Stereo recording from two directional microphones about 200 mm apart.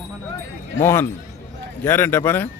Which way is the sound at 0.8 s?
10° left (ahead or behind).